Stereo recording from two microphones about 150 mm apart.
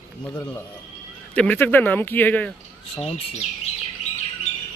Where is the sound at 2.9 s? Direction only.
45° left (ahead or behind).